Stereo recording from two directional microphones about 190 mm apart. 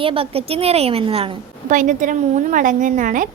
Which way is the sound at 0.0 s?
30° right (ahead or behind).